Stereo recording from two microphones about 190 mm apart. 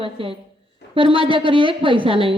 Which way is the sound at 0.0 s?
30° right (ahead or behind).